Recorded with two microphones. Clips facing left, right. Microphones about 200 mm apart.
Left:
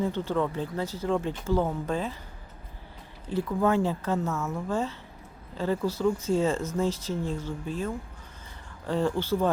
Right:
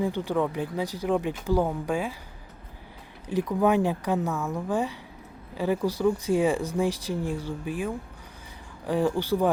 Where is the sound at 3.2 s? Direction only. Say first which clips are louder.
Right 2 dB; 15° right (ahead or behind).